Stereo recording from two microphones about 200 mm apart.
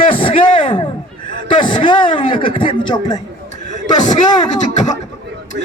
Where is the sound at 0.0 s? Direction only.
25° left (ahead or behind).